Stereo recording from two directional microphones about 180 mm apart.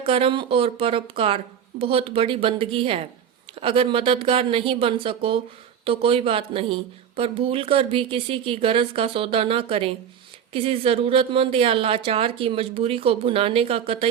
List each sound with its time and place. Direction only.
0.0 s a woman's voice: 30° right (ahead or behind)